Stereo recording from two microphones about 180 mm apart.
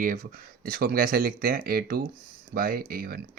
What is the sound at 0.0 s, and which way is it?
Speech, 50° right (ahead or behind).